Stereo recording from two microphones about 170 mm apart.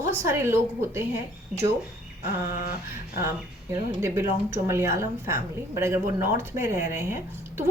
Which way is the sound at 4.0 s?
15° right (ahead or behind).